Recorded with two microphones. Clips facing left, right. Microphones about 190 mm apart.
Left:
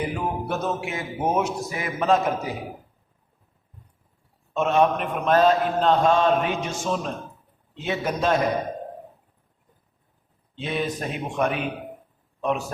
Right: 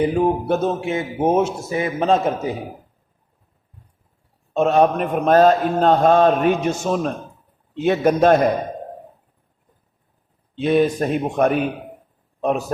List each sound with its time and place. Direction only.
0.0 s speech: 30° right (ahead or behind)
4.5 s a man's voice: 40° right (ahead or behind); by 8.4 s 55° right (ahead or behind)
10.6 s a man's voice: 50° right (ahead or behind)